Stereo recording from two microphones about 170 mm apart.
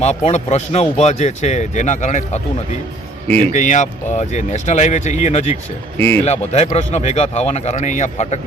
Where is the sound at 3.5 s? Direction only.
45° left (ahead or behind).